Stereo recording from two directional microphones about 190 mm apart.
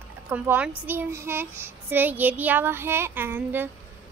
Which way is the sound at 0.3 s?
10° right (ahead or behind).